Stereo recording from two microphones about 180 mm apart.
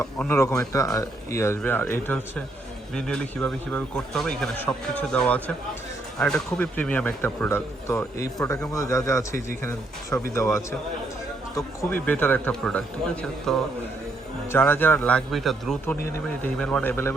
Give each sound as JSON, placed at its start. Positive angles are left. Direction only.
{"t": 0.0, "sound": "a man's voice", "side_deg": 15}
{"t": 11.5, "sound": "a man's voice", "side_deg": 15}